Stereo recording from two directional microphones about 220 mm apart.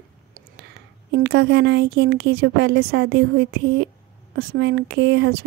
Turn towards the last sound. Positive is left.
turn(degrees=-50)  # may be behind; listen again after turning